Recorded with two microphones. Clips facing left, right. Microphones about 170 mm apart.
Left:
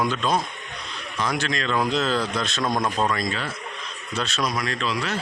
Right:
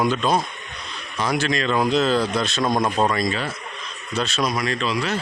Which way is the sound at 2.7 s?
20° right (ahead or behind).